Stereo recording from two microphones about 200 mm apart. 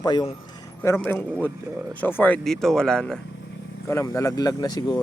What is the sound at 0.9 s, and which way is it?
Speech, 10° left (ahead or behind).